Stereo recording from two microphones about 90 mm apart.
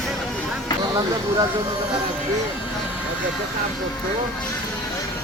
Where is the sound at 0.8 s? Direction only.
45° right (ahead or behind).